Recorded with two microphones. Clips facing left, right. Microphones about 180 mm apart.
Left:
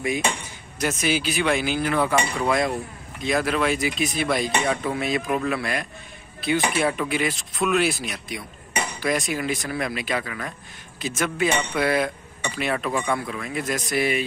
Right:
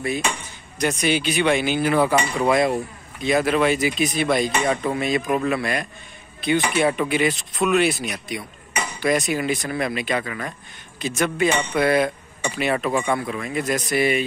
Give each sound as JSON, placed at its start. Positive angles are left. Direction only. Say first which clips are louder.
{"t": 0.7, "sound": "speech", "louder": "right 3 dB", "side_deg": 5}